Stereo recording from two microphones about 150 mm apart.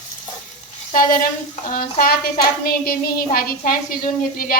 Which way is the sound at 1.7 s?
85° left.